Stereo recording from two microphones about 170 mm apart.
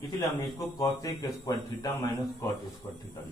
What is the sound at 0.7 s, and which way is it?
A man's voice, 20° left (ahead or behind).